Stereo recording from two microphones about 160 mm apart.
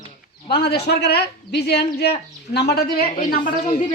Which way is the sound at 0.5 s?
85° left.